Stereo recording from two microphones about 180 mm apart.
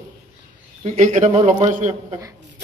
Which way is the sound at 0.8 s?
40° right (ahead or behind).